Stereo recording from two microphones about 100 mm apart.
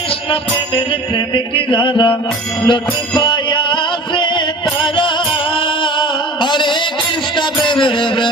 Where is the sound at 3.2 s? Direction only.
50° left (ahead or behind).